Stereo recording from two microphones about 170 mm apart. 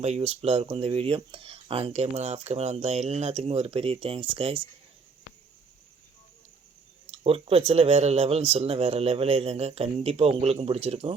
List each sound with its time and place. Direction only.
0.0 s speech: 40° right (ahead or behind)
7.1 s speech: 35° right (ahead or behind)